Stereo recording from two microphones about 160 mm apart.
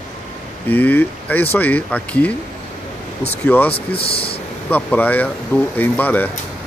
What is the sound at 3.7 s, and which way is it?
Speech, 35° left (ahead or behind).